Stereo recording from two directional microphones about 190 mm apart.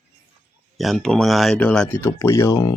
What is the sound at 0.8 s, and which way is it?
Speech, centre (ahead or behind).